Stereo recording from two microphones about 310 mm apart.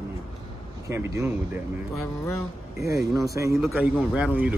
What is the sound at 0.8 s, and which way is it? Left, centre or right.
Speech, centre.